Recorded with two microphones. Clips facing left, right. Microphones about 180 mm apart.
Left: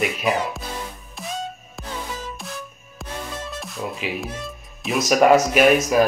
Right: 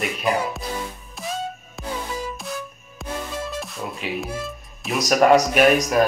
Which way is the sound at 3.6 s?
Centre (ahead or behind).